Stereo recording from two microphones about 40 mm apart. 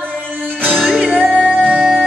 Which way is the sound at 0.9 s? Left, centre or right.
Centre.